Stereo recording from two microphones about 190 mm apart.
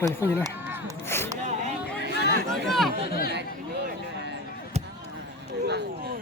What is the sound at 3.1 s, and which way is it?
Speech, 55° left (ahead or behind).